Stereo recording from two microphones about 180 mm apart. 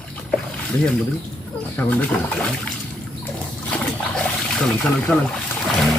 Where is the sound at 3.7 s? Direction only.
5° left (ahead or behind).